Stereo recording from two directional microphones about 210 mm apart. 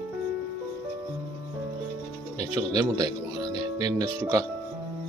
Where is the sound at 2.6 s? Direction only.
15° right (ahead or behind).